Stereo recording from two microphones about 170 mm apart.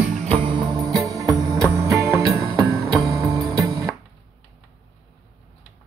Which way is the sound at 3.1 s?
20° right (ahead or behind).